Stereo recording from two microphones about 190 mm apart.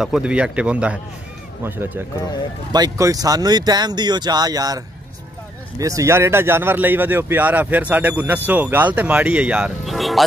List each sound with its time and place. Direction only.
0.0 s speech: 5° right (ahead or behind)